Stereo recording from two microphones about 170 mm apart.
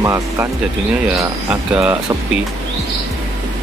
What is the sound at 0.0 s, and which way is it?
Speech, 15° right (ahead or behind).